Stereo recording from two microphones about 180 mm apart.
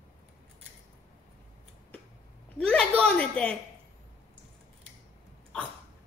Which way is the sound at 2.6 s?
5° left (ahead or behind).